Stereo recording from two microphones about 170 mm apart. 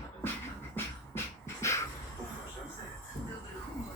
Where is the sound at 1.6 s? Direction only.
15° left (ahead or behind).